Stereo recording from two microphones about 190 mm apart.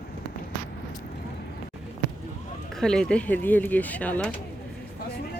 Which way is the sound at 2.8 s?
5° left (ahead or behind).